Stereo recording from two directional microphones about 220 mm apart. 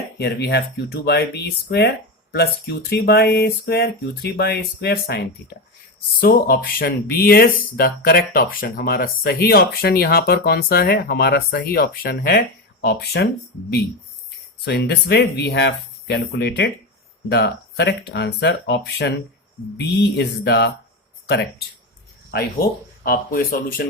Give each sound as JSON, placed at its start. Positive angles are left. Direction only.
{"t": 0.2, "sound": "speech", "side_deg": 50}
{"t": 2.9, "sound": "speech", "side_deg": 50}
{"t": 14.6, "sound": "speech", "side_deg": 50}
{"t": 22.3, "sound": "speech", "side_deg": 45}